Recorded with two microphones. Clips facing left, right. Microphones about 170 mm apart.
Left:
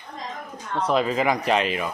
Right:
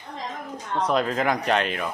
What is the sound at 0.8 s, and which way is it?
Speech, 5° left (ahead or behind).